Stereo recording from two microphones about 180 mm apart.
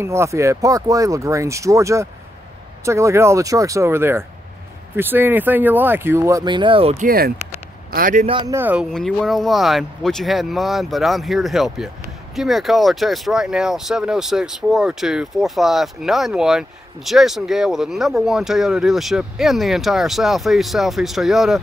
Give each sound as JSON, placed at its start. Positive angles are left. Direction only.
{"t": 0.0, "sound": "speech", "side_deg": -15}
{"t": 7.1, "sound": "a man's voice", "side_deg": -55}
{"t": 8.3, "sound": "speech", "side_deg": -25}
{"t": 8.5, "sound": "speech", "side_deg": -10}
{"t": 8.9, "sound": "speech", "side_deg": 0}